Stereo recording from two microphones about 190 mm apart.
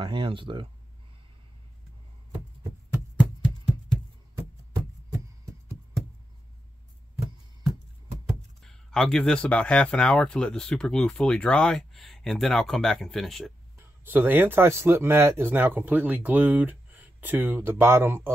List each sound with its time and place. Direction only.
0.0 s speech: 25° right (ahead or behind)
8.3 s speech: centre (ahead or behind)
13.7 s speech: 10° right (ahead or behind)